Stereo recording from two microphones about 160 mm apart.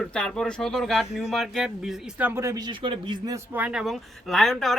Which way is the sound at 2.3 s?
20° right (ahead or behind).